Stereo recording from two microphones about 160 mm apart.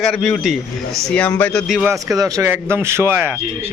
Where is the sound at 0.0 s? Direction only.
Centre (ahead or behind).